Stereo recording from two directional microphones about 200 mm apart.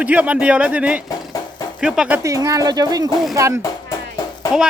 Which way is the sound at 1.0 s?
15° left (ahead or behind).